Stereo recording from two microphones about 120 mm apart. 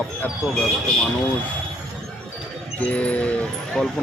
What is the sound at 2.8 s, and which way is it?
Speech, 10° left (ahead or behind).